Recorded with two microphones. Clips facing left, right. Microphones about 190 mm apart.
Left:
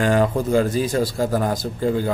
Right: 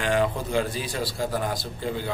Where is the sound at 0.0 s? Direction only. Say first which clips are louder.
Left 6 dB; 40° left (ahead or behind).